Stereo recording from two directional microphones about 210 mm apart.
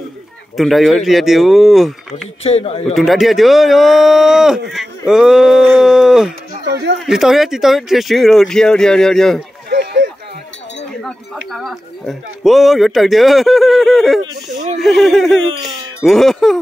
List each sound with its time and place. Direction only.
0.6 s speech: centre (ahead or behind)
2.4 s speech: 30° left (ahead or behind)
2.8 s speech: centre (ahead or behind)
6.5 s speech: 50° right (ahead or behind)
7.1 s speech: centre (ahead or behind)
9.7 s a sound: 55° right (ahead or behind)
11.0 s speech: centre (ahead or behind)